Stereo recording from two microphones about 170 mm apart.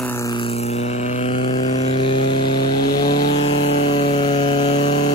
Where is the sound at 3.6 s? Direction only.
35° left (ahead or behind).